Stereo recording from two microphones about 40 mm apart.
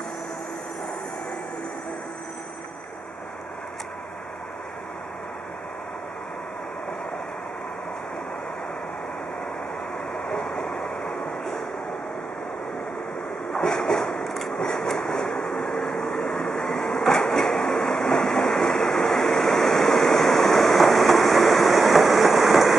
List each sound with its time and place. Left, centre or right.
10.4 s vehicle: centre
13.5 s train: centre